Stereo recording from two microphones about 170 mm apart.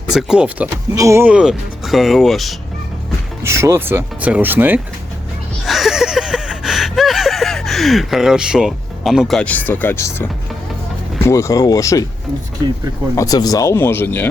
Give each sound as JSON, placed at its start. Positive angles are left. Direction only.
{"t": 0.1, "sound": "speech", "side_deg": -5}
{"t": 3.4, "sound": "speech", "side_deg": -15}
{"t": 5.6, "sound": "a sound", "side_deg": 0}
{"t": 11.2, "sound": "speech", "side_deg": 15}
{"t": 13.1, "sound": "speech", "side_deg": 20}